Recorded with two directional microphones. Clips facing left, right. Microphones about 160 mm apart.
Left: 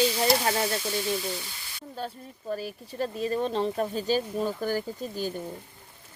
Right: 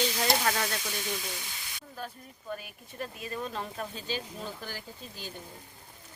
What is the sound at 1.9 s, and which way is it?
Speech, 30° left (ahead or behind).